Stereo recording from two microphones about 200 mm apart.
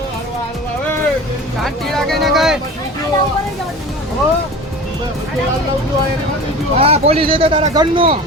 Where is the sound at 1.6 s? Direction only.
Centre (ahead or behind).